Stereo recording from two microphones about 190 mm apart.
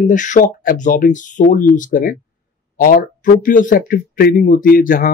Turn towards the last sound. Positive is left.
turn(degrees=45)  # may be behind; listen again after turning